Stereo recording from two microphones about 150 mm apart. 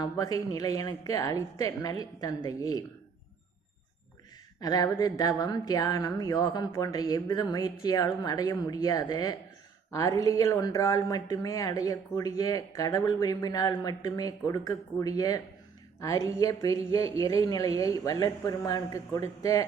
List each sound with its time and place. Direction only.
0.0 s speech: 25° left (ahead or behind)
4.6 s speech: 25° left (ahead or behind)